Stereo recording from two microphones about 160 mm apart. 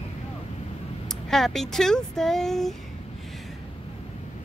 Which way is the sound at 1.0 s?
Centre (ahead or behind).